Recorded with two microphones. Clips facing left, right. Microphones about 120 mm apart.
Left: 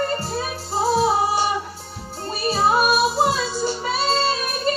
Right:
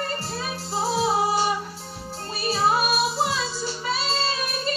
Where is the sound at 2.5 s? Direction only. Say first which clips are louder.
Left 4 dB; 45° left (ahead or behind).